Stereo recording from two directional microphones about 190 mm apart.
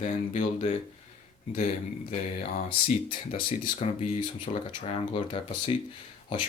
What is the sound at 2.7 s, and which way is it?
A man's voice, 25° left (ahead or behind).